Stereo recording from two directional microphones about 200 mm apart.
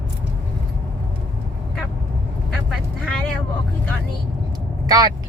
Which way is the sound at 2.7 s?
Centre (ahead or behind).